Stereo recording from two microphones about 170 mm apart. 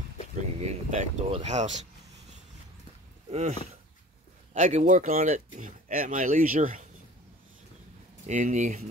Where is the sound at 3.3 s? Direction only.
40° right (ahead or behind).